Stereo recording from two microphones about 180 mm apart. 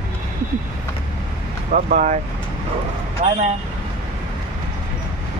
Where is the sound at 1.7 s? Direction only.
45° right (ahead or behind).